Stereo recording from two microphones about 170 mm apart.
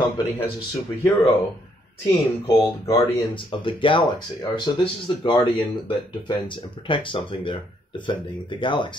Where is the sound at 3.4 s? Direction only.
30° left (ahead or behind).